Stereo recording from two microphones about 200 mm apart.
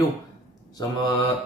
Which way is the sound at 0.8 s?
20° left (ahead or behind).